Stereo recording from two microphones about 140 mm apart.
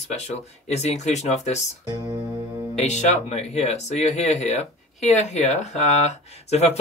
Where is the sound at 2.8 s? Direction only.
55° left (ahead or behind).